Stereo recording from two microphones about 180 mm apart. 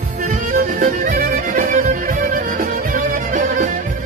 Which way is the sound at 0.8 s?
50° right (ahead or behind).